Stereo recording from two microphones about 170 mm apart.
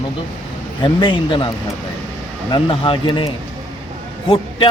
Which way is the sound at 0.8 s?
30° left (ahead or behind).